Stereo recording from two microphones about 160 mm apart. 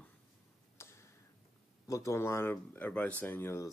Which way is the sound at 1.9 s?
20° left (ahead or behind).